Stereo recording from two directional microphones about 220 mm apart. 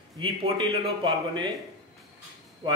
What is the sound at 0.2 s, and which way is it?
Speech, 20° right (ahead or behind).